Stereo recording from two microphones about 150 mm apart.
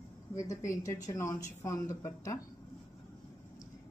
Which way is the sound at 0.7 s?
20° left (ahead or behind).